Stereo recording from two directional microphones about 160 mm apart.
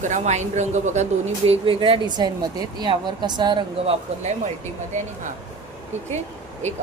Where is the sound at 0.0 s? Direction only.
50° right (ahead or behind).